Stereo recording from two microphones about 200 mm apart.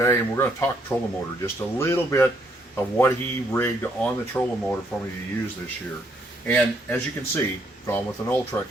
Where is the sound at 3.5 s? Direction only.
10° left (ahead or behind).